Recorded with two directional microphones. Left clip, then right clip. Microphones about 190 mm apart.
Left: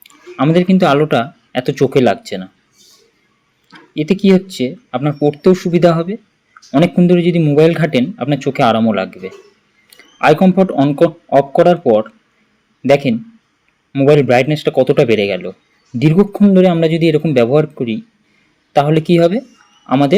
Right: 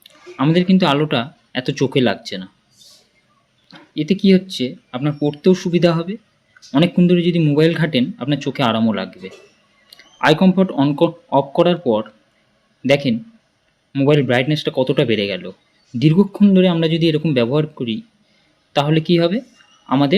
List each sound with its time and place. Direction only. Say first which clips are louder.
0.0 s speech: left 4 dB; 5° left (ahead or behind)
3.7 s a man's voice: left 4 dB; 5° left (ahead or behind)